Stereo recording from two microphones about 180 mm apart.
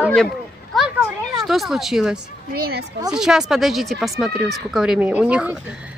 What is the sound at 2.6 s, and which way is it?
Speech, 60° right (ahead or behind).